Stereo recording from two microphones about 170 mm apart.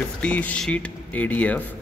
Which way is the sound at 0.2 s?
10° left (ahead or behind).